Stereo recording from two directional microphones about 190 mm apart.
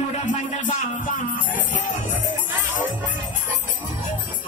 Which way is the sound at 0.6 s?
45° left (ahead or behind).